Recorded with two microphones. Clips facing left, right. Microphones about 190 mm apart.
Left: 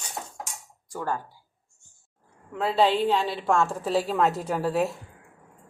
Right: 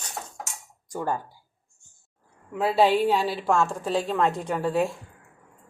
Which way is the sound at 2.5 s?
10° right (ahead or behind).